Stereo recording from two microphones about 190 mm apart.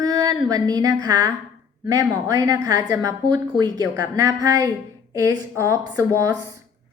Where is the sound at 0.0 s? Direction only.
20° right (ahead or behind).